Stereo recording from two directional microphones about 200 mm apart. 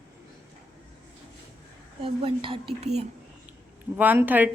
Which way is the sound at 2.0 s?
25° right (ahead or behind).